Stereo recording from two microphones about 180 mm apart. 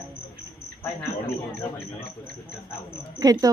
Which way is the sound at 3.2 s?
20° right (ahead or behind).